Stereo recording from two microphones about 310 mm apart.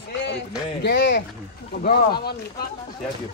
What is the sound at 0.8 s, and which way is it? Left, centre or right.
A man's voice, left.